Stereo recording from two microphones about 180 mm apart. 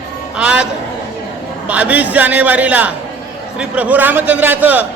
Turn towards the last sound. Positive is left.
turn(degrees=-10)  # may be behind; listen again after turning